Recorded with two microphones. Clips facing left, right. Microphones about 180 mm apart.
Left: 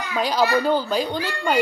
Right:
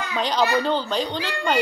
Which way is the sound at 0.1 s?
5° left (ahead or behind).